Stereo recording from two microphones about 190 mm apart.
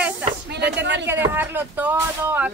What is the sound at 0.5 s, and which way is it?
Speech, 65° right (ahead or behind).